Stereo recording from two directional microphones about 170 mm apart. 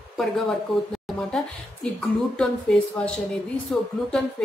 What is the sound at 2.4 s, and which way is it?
A woman's voice, 5° left (ahead or behind).